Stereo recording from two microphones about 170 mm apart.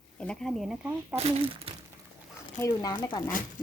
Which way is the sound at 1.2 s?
35° right (ahead or behind).